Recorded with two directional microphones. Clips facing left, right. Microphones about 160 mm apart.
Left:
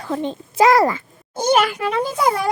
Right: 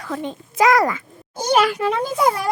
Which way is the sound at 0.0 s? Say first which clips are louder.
Left 3 dB; 30° left (ahead or behind).